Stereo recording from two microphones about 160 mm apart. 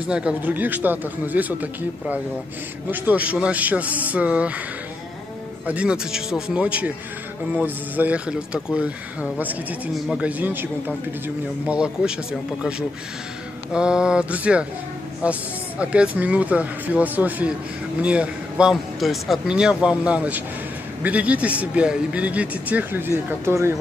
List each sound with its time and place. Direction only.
0.1 s speech: 5° right (ahead or behind)
5.7 s a man's voice: 5° right (ahead or behind)
13.7 s a man's voice: 5° right (ahead or behind)